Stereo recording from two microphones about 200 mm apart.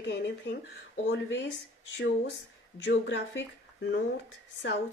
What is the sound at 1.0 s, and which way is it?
Speech, 55° left (ahead or behind).